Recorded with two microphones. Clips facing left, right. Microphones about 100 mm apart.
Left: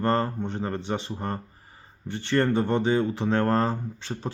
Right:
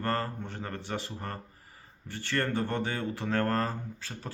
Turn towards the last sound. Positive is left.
turn(degrees=25)  # may be behind; listen again after turning